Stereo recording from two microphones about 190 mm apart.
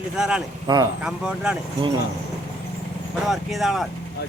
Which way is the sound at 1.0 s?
5° right (ahead or behind).